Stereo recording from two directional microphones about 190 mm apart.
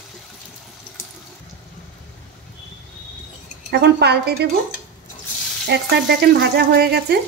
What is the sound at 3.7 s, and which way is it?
Speech, 60° right (ahead or behind).